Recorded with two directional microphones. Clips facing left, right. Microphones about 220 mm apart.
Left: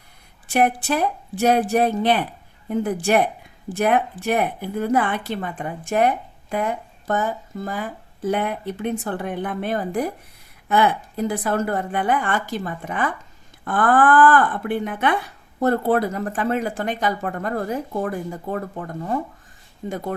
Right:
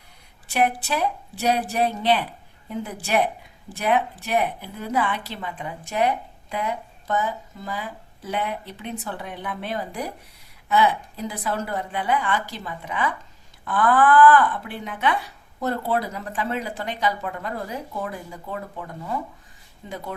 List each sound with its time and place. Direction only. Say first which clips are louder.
0.5 s a woman's voice: left 4 dB; 50° left (ahead or behind)